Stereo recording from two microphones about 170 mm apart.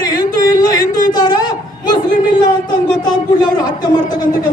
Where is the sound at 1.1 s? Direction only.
25° left (ahead or behind).